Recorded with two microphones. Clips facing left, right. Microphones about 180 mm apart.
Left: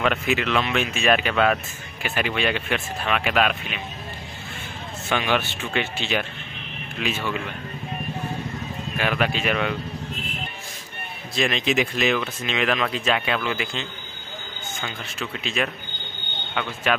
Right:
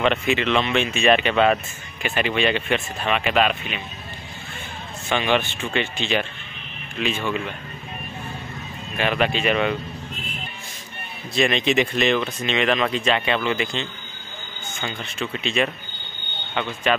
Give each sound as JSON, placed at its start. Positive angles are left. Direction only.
{"t": 0.0, "sound": "speech", "side_deg": 5}
{"t": 5.1, "sound": "speech", "side_deg": 5}
{"t": 8.9, "sound": "speech", "side_deg": 5}
{"t": 11.3, "sound": "speech", "side_deg": 0}